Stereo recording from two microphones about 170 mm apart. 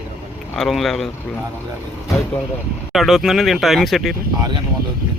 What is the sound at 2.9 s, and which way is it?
Speech, centre (ahead or behind).